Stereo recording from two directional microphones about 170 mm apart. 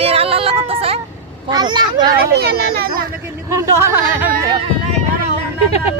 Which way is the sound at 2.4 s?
65° right (ahead or behind).